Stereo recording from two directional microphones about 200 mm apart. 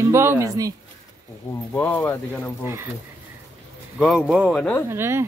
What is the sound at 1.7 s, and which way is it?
Speech, 10° left (ahead or behind).